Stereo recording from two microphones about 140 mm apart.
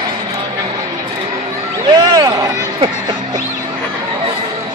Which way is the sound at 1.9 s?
30° right (ahead or behind).